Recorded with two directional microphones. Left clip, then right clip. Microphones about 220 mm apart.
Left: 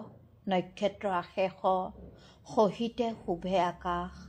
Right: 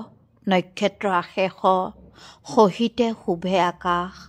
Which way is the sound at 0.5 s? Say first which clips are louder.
Right 9 dB; 35° right (ahead or behind).